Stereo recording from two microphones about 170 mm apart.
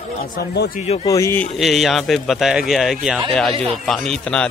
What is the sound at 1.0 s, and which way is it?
Speech, 20° left (ahead or behind).